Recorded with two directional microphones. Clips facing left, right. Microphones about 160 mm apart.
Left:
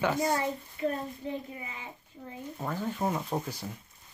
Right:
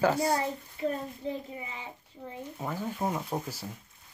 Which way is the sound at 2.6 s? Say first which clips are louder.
Left 1 dB; 10° right (ahead or behind).